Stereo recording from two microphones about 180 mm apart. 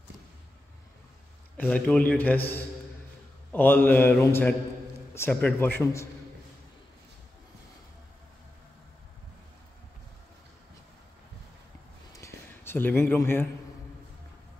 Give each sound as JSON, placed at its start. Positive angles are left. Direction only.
{"t": 1.6, "sound": "a man's voice", "side_deg": 5}
{"t": 3.5, "sound": "a man's voice", "side_deg": 10}
{"t": 12.2, "sound": "a sound", "side_deg": 15}
{"t": 12.6, "sound": "a man's voice", "side_deg": 10}